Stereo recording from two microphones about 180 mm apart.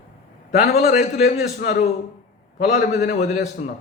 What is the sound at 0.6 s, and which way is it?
A man's voice, 55° left (ahead or behind).